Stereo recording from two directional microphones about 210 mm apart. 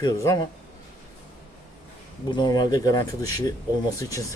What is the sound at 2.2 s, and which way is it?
Speech, 20° left (ahead or behind).